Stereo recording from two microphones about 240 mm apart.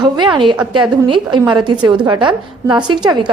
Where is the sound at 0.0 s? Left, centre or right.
Centre.